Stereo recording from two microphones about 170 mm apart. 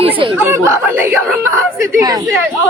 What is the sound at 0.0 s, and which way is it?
Speech, 30° right (ahead or behind).